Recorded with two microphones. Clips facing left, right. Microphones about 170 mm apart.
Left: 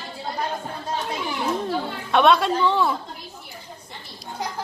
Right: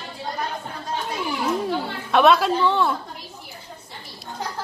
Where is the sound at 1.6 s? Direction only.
5° right (ahead or behind).